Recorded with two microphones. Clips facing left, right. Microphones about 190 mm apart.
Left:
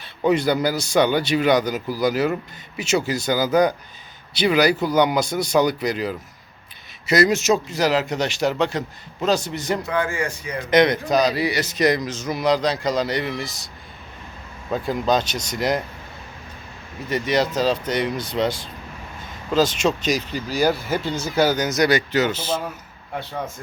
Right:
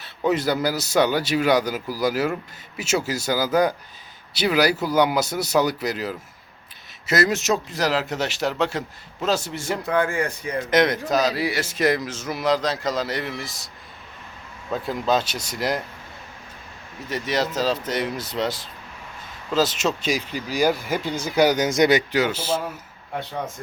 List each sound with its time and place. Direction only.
0.0 s a man's voice: centre (ahead or behind)
9.8 s speech: 55° right (ahead or behind)
10.7 s a man's voice: 5° right (ahead or behind)
14.7 s a man's voice: centre (ahead or behind)
17.1 s a man's voice: centre (ahead or behind)